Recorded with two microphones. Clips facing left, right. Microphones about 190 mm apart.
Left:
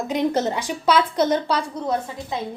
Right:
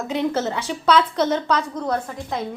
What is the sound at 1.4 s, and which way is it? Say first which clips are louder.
Speech: right 1 dB; 30° left (ahead or behind).